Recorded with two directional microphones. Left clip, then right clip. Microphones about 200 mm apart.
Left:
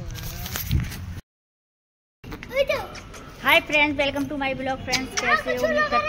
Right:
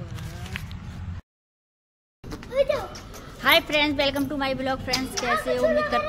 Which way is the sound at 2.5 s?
25° left (ahead or behind).